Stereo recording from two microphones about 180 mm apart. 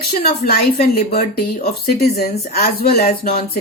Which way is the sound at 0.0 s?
60° left (ahead or behind).